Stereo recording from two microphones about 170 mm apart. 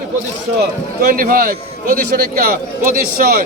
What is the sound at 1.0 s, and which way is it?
A man's voice, 60° right (ahead or behind).